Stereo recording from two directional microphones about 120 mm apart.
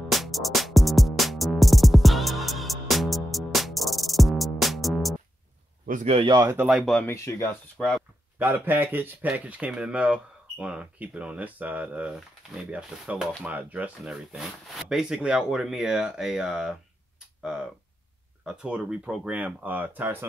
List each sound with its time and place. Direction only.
0.1 s music: centre (ahead or behind)
6.1 s speech: 40° right (ahead or behind)
6.4 s speech: 20° right (ahead or behind)
6.7 s speech: centre (ahead or behind)
7.1 s speech: 25° left (ahead or behind)
7.7 s speech: 5° left (ahead or behind)
8.4 s speech: 15° right (ahead or behind)